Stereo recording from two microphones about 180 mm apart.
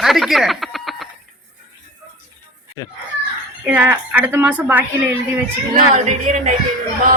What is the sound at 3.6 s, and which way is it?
A woman's voice, 10° right (ahead or behind).